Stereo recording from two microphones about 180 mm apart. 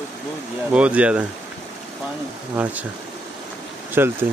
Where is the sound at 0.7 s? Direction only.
5° right (ahead or behind).